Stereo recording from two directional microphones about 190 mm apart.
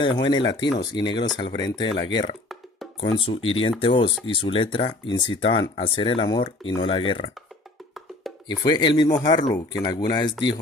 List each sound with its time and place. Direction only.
0.2 s speech: 25° left (ahead or behind)
8.5 s speech: 20° left (ahead or behind)